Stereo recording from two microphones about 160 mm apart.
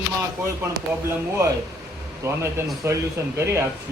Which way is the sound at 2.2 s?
15° right (ahead or behind).